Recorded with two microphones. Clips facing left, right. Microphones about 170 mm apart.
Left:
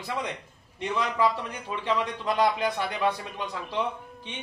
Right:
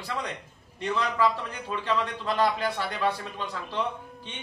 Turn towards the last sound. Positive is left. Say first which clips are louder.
# left 1 dB
turn(degrees=15)  # may be behind; listen again after turning